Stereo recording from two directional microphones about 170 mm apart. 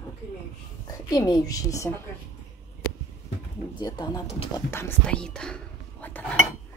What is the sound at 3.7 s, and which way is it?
Speech, 25° left (ahead or behind).